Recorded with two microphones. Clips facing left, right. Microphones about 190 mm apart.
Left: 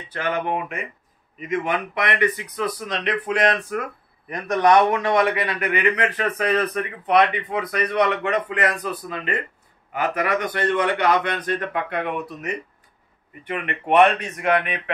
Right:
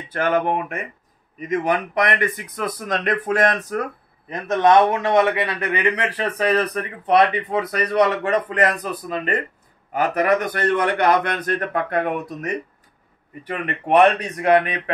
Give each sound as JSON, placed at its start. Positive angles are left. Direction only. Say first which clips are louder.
{"t": 0.1, "sound": "speech", "louder": "right 4 dB", "side_deg": -50}
{"t": 4.3, "sound": "a man's voice", "louder": "right 1 dB", "side_deg": -25}
{"t": 9.9, "sound": "speech", "louder": "right 4 dB", "side_deg": -40}
{"t": 13.4, "sound": "a man's voice", "louder": "right 1 dB", "side_deg": -40}